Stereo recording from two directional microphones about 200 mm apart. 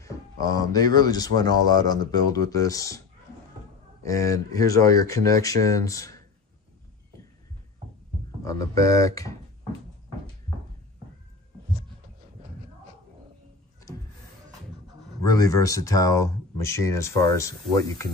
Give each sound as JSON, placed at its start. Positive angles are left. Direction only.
{"t": 0.0, "sound": "speech", "side_deg": 20}
{"t": 4.0, "sound": "speech", "side_deg": 15}
{"t": 8.5, "sound": "speech", "side_deg": 15}
{"t": 15.3, "sound": "speech", "side_deg": 15}